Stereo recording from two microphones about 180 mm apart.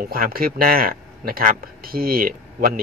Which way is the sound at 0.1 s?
55° right (ahead or behind).